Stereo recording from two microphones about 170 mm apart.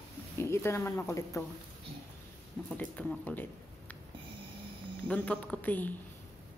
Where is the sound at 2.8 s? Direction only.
10° left (ahead or behind).